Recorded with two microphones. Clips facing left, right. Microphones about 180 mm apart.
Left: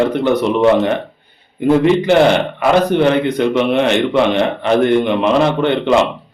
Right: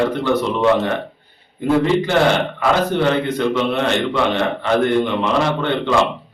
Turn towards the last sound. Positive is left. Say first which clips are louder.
# left 4 dB
turn(degrees=20)  # may be behind; listen again after turning